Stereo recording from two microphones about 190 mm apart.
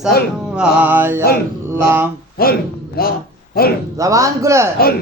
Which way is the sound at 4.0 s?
15° right (ahead or behind).